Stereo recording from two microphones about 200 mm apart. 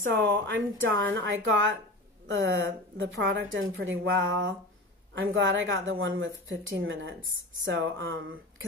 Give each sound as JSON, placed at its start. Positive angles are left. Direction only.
{"t": 0.1, "sound": "speech", "side_deg": -65}
{"t": 2.4, "sound": "speech", "side_deg": -55}